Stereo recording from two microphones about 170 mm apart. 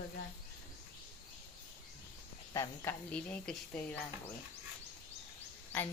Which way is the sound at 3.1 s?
5° left (ahead or behind).